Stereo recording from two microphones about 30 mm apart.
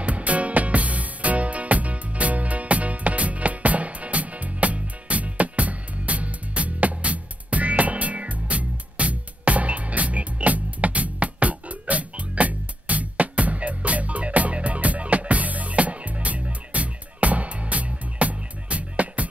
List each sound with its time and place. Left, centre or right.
0.0 s music: right